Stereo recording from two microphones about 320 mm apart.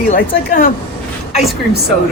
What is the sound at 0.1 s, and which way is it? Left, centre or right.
Speech, left.